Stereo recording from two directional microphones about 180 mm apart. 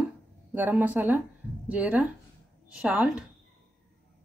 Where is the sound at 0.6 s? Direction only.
10° right (ahead or behind).